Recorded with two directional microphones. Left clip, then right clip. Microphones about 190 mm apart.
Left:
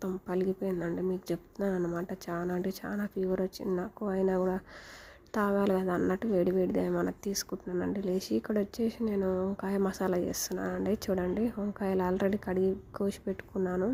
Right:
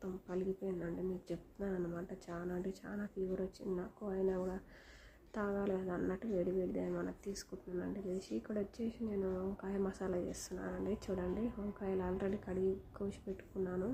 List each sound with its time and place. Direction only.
0.0 s a woman's voice: 45° left (ahead or behind)